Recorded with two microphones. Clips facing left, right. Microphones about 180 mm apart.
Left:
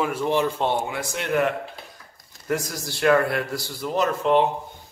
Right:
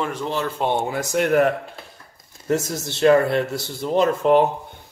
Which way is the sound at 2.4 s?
25° right (ahead or behind).